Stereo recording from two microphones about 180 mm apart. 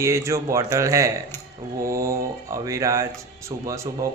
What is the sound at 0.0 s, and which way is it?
Speech, 15° right (ahead or behind).